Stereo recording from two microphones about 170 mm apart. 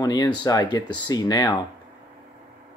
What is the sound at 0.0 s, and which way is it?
Speech, 25° left (ahead or behind).